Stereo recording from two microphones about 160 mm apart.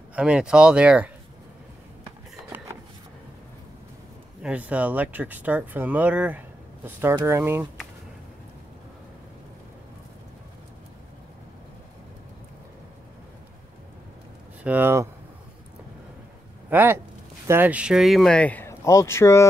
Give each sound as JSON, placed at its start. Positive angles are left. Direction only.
{"t": 0.1, "sound": "speech", "side_deg": -5}
{"t": 4.4, "sound": "speech", "side_deg": -10}
{"t": 14.6, "sound": "speech", "side_deg": -10}
{"t": 16.7, "sound": "speech", "side_deg": -15}